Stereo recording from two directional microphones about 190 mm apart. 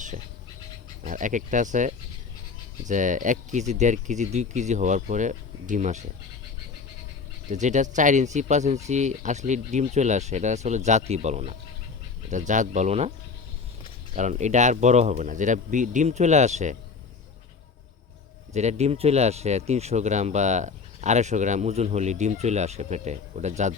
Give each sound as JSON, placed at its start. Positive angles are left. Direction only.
{"t": 1.0, "sound": "speech", "side_deg": -40}
{"t": 7.5, "sound": "speech", "side_deg": -40}
{"t": 14.2, "sound": "speech", "side_deg": -40}
{"t": 18.5, "sound": "speech", "side_deg": -35}